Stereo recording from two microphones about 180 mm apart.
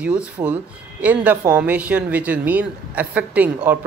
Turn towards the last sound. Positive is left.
turn(degrees=-10)  # may be behind; listen again after turning